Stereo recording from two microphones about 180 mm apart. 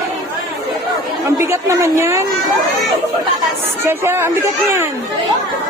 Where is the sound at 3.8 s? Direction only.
15° right (ahead or behind).